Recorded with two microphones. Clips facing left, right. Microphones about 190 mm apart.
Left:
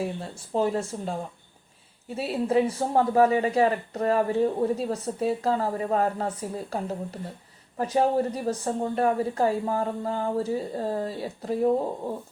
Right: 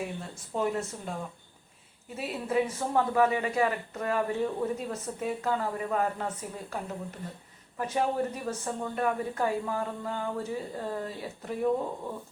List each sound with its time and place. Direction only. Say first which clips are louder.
0.0 s a man's voice: left 5 dB; 30° left (ahead or behind)